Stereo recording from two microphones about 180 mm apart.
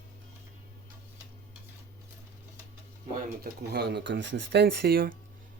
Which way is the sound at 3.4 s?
65° right (ahead or behind).